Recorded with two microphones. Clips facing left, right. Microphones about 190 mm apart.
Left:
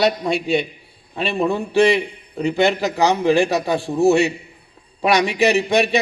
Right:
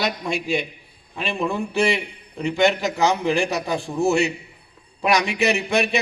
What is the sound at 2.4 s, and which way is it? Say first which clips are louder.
A man's voice: left 2 dB; 35° left (ahead or behind).